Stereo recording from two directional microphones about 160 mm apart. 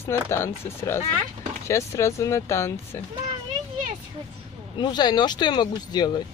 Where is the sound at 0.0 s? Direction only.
15° left (ahead or behind).